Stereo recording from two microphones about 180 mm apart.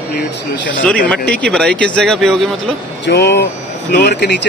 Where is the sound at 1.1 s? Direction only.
5° left (ahead or behind).